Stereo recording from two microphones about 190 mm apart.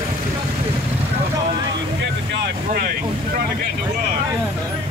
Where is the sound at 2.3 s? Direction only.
50° right (ahead or behind).